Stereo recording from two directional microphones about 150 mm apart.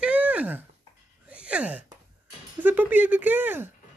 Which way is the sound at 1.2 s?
10° right (ahead or behind).